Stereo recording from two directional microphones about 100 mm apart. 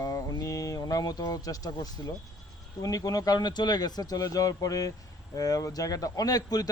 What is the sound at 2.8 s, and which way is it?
Speech, 35° left (ahead or behind).